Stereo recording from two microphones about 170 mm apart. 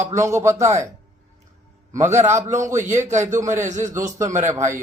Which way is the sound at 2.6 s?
15° right (ahead or behind).